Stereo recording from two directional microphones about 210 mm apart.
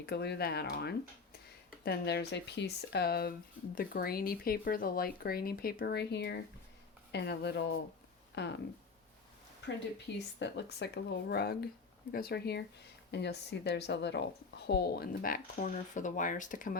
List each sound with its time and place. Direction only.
0.0 s speech: 50° left (ahead or behind)
10.1 s speech: 55° left (ahead or behind)